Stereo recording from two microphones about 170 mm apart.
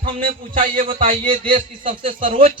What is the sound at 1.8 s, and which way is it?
Speech, 50° right (ahead or behind).